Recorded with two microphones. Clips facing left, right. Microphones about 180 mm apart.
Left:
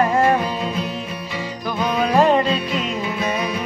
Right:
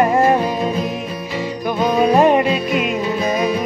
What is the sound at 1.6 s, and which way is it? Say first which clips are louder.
Music: right 5 dB; 15° right (ahead or behind).